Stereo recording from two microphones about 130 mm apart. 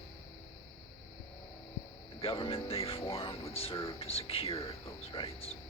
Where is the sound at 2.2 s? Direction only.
45° left (ahead or behind).